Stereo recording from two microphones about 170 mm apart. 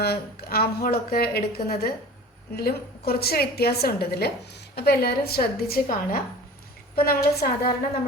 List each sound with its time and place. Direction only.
0.0 s a woman's voice: 65° left (ahead or behind)